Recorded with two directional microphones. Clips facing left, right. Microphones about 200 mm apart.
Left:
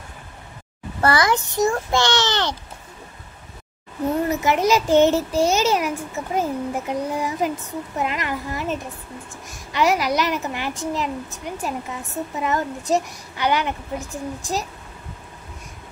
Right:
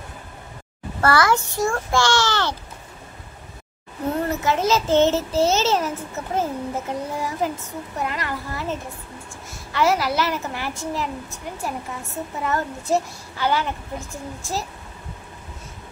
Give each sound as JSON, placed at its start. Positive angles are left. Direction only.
{"t": 1.0, "sound": "a child's voice", "side_deg": 20}
{"t": 4.3, "sound": "a child's voice", "side_deg": 15}